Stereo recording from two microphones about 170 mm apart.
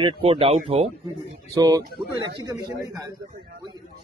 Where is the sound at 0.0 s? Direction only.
35° right (ahead or behind).